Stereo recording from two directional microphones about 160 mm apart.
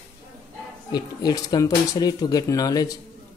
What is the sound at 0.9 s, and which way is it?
Speech, 25° left (ahead or behind).